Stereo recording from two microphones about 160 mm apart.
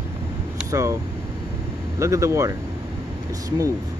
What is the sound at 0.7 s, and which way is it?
Speech, 20° right (ahead or behind).